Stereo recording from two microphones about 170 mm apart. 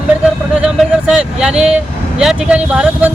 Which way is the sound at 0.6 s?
5° right (ahead or behind).